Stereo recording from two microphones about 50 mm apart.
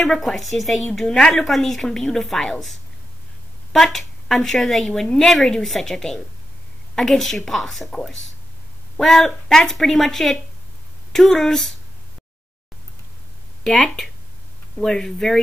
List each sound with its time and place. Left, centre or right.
0.0 s a woman's voice: centre
13.7 s speech: centre